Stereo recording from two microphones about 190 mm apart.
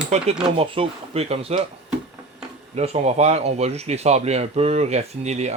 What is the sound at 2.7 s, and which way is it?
Speech, 35° right (ahead or behind).